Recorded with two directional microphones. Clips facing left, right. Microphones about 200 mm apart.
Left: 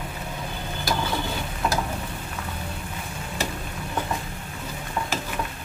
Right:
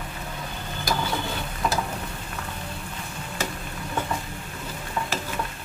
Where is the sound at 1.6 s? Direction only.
5° left (ahead or behind).